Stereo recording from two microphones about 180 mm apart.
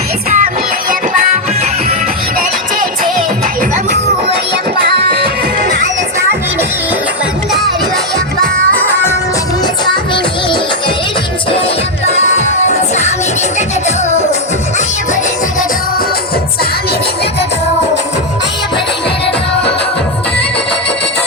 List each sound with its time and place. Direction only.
0.3 s music: 50° right (ahead or behind)
5.2 s music: 40° left (ahead or behind)
8.7 s music: 10° left (ahead or behind)
12.0 s music: 40° left (ahead or behind)